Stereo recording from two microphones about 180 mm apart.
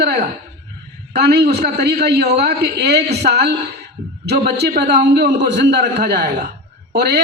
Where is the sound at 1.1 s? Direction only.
65° right (ahead or behind).